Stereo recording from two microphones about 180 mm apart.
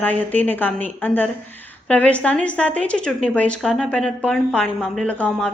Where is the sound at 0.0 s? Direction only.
10° left (ahead or behind).